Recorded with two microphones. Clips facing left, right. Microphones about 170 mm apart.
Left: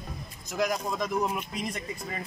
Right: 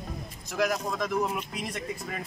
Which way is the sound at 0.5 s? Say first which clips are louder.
Right 1 dB; centre (ahead or behind).